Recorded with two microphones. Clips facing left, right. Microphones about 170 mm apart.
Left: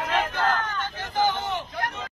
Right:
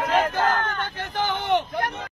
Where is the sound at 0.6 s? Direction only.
60° right (ahead or behind).